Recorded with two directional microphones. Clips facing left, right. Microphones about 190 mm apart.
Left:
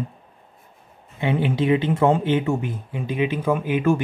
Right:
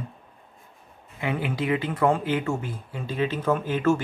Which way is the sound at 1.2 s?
25° left (ahead or behind).